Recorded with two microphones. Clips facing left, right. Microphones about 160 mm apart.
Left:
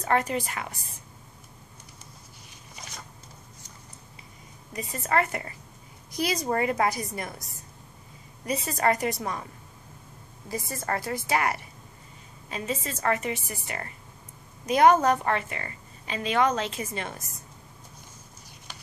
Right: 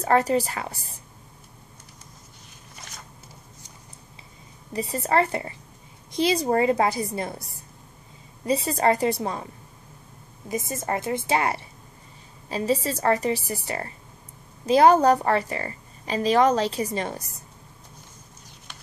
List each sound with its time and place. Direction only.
0.0 s a woman's voice: 35° right (ahead or behind)
4.7 s a woman's voice: 30° right (ahead or behind)
8.5 s a woman's voice: 30° right (ahead or behind)
10.5 s a woman's voice: 20° right (ahead or behind)